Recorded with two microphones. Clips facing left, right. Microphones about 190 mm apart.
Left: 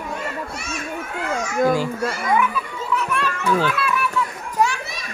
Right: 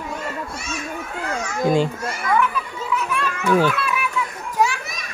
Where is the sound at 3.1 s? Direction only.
Centre (ahead or behind).